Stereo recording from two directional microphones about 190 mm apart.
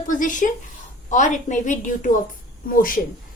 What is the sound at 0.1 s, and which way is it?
A woman's voice, 45° left (ahead or behind).